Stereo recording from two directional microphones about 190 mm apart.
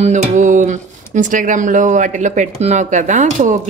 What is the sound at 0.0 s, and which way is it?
Speech, 40° right (ahead or behind).